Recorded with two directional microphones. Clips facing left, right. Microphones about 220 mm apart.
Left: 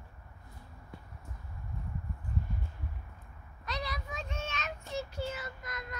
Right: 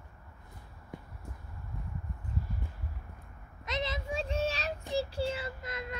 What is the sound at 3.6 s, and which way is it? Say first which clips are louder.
Child singing: right 4 dB; 20° right (ahead or behind).